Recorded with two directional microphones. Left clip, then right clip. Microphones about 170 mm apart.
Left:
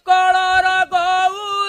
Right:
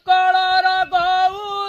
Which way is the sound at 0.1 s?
25° left (ahead or behind).